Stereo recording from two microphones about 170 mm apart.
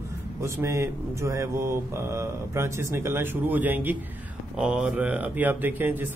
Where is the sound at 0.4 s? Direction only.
15° right (ahead or behind).